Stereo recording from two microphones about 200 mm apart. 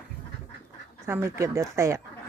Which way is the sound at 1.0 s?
10° right (ahead or behind).